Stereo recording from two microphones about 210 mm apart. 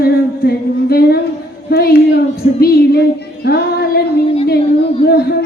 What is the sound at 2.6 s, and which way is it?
Female singing, 50° left (ahead or behind).